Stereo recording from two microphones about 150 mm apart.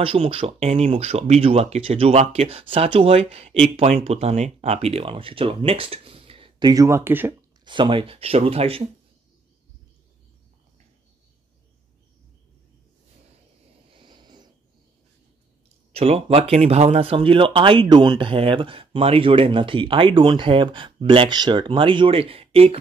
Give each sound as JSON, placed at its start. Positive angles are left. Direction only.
{"t": 0.0, "sound": "speech", "side_deg": -40}
{"t": 6.7, "sound": "speech", "side_deg": -20}
{"t": 7.6, "sound": "speech", "side_deg": -30}
{"t": 13.8, "sound": "a sound", "side_deg": -35}
{"t": 15.9, "sound": "speech", "side_deg": -40}